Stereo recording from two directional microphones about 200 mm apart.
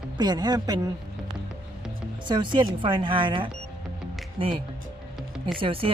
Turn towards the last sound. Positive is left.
turn(degrees=-25)  # may be behind; listen again after turning